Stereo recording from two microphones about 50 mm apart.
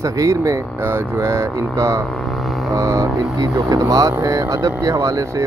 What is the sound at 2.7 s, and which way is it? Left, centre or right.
Speech, right.